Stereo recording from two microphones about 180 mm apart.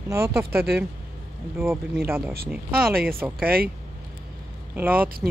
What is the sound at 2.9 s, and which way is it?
Speech, 55° right (ahead or behind).